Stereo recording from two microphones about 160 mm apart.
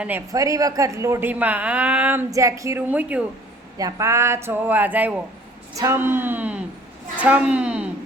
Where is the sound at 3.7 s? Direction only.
20° right (ahead or behind).